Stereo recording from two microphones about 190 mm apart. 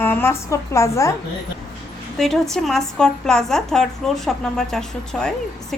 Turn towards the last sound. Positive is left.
turn(degrees=5)  # may be behind; listen again after turning